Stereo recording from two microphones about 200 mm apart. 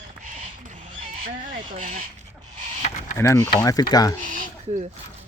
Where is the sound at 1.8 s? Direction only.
35° right (ahead or behind).